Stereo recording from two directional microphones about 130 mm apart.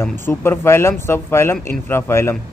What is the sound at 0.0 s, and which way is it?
A man's voice, 20° left (ahead or behind).